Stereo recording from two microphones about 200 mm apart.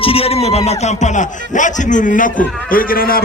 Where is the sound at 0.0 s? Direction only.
30° left (ahead or behind).